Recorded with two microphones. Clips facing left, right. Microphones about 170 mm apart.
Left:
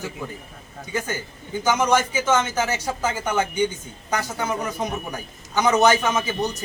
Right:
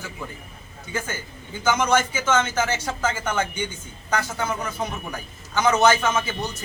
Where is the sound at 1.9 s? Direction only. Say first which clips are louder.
Left 1 dB; 15° left (ahead or behind).